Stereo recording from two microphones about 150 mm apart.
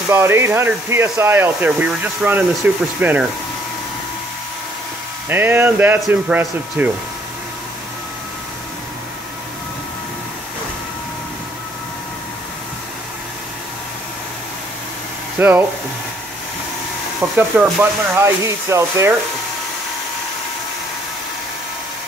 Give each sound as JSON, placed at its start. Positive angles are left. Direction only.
{"t": 0.1, "sound": "speech", "side_deg": -15}
{"t": 5.3, "sound": "speech", "side_deg": -15}
{"t": 15.3, "sound": "speech", "side_deg": -15}
{"t": 17.4, "sound": "speech", "side_deg": -10}